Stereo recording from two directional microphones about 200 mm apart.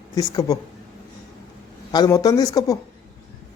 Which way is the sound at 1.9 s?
20° left (ahead or behind).